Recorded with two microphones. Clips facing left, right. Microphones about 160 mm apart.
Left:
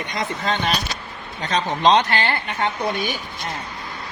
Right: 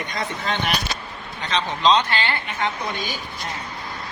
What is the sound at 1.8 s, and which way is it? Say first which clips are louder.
Speech: left 2 dB; 50° left (ahead or behind).